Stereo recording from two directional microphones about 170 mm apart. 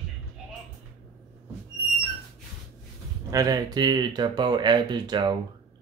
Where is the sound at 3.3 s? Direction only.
20° right (ahead or behind).